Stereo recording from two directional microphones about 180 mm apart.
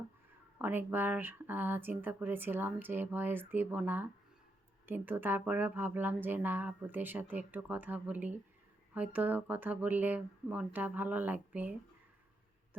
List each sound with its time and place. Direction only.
0.6 s speech: 10° right (ahead or behind)